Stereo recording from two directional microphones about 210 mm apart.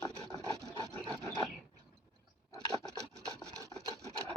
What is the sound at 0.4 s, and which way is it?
Filing, 15° right (ahead or behind).